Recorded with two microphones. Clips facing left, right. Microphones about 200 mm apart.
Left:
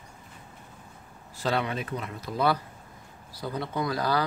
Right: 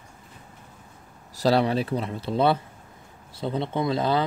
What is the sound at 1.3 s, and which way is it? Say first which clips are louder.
Speech: right 7 dB; 35° right (ahead or behind).